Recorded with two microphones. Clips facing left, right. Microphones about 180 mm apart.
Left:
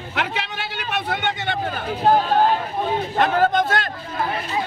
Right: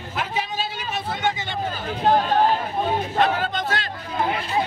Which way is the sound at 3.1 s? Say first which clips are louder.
Left 6 dB; 50° left (ahead or behind).